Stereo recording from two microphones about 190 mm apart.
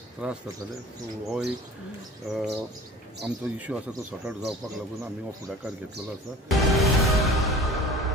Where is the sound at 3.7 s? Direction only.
5° right (ahead or behind).